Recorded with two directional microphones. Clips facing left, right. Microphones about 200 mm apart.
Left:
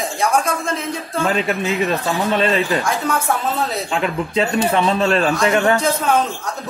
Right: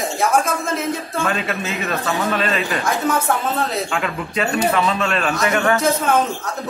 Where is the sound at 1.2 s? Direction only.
25° left (ahead or behind).